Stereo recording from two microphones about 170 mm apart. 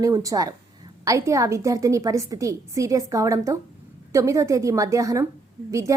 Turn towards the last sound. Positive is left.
turn(degrees=-20)  # may be behind; listen again after turning